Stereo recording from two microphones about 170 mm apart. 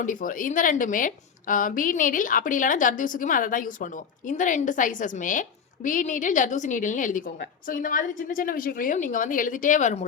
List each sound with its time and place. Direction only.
0.0 s a woman's voice: 50° left (ahead or behind)